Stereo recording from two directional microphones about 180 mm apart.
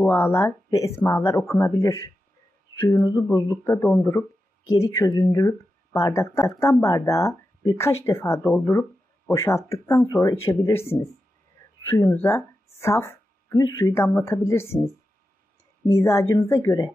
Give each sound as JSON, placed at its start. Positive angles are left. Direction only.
{"t": 0.0, "sound": "speech", "side_deg": 15}
{"t": 15.9, "sound": "speech", "side_deg": 15}